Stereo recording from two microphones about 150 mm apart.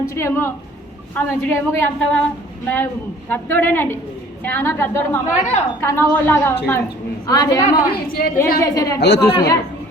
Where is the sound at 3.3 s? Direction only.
15° left (ahead or behind).